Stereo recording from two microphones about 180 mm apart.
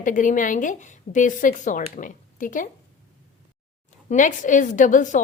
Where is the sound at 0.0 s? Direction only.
45° left (ahead or behind).